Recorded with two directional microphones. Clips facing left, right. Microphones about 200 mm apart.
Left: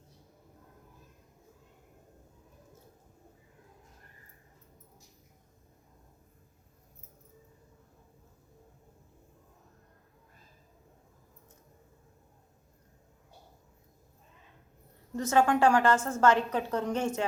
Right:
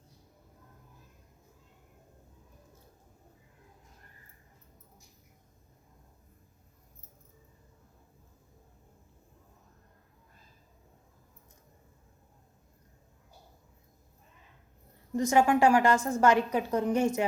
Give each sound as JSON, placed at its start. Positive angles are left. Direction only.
{"t": 15.1, "sound": "a woman's voice", "side_deg": -10}